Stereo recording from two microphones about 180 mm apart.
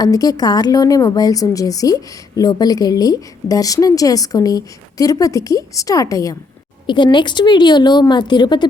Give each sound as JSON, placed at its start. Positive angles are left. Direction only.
{"t": 0.0, "sound": "a woman's voice", "side_deg": 20}